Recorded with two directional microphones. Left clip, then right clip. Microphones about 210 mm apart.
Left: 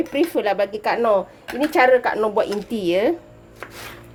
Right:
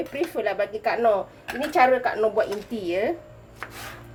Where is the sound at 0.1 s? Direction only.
50° left (ahead or behind).